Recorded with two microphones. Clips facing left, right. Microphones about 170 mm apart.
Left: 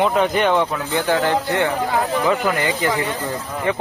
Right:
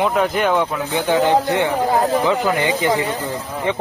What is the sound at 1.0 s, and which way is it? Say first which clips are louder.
Speech: right 4 dB; 20° right (ahead or behind).